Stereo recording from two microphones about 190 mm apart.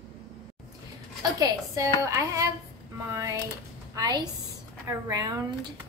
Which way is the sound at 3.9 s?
20° right (ahead or behind).